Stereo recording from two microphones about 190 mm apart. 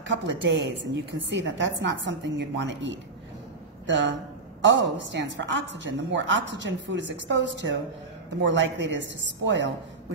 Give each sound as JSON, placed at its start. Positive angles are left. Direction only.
{"t": 0.1, "sound": "a woman's voice", "side_deg": -75}